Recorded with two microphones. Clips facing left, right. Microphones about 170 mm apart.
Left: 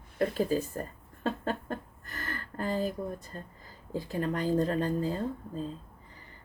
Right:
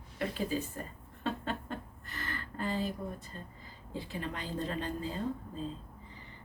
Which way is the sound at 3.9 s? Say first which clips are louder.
Left 7 dB; 45° left (ahead or behind).